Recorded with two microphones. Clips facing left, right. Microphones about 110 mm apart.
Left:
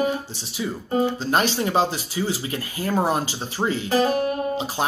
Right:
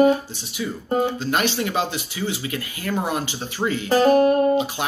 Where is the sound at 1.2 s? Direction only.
35° left (ahead or behind).